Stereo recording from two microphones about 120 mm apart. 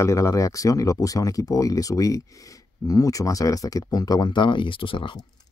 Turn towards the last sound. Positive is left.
turn(degrees=45)  # may be behind; listen again after turning